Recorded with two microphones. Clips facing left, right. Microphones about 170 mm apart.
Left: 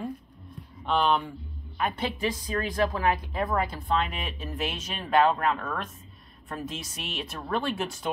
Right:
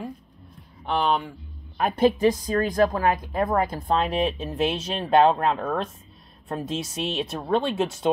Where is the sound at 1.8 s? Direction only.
40° right (ahead or behind).